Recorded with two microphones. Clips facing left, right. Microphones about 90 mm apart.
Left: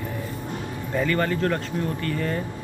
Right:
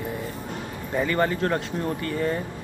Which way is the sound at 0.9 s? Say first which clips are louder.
Even; 15° right (ahead or behind).